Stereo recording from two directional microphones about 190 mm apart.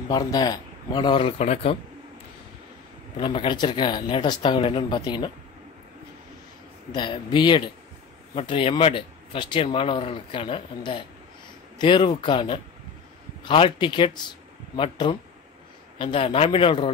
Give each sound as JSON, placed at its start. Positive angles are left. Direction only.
{"t": 0.1, "sound": "speech", "side_deg": 20}
{"t": 3.2, "sound": "speech", "side_deg": 25}
{"t": 6.9, "sound": "speech", "side_deg": 25}